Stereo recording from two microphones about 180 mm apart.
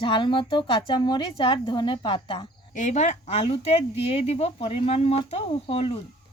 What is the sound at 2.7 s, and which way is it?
Speech, 40° left (ahead or behind).